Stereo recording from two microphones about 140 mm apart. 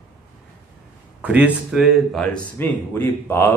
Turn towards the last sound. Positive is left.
turn(degrees=15)  # may be behind; listen again after turning